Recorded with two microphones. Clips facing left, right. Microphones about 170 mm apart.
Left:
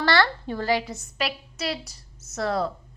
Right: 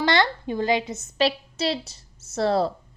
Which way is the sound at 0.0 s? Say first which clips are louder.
Right 1 dB; 20° right (ahead or behind).